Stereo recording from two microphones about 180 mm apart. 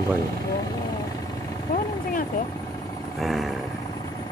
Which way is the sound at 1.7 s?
50° left (ahead or behind).